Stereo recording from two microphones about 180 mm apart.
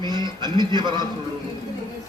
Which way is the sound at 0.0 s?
25° right (ahead or behind).